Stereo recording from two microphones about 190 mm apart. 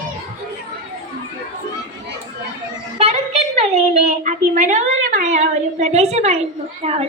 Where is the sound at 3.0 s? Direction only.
35° right (ahead or behind).